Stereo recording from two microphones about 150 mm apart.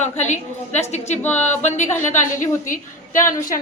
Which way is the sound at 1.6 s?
55° left (ahead or behind).